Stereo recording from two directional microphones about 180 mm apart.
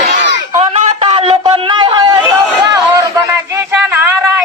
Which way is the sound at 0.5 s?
40° right (ahead or behind).